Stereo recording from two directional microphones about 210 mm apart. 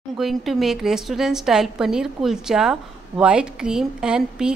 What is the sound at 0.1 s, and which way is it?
A woman's voice, centre (ahead or behind).